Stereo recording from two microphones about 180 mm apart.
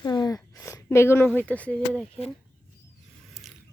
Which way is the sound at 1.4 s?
5° left (ahead or behind).